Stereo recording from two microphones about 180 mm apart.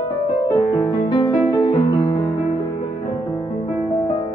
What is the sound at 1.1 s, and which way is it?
Music, 25° left (ahead or behind).